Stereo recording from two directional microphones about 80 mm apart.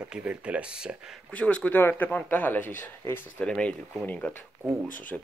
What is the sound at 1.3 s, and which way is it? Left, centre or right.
Speech, centre.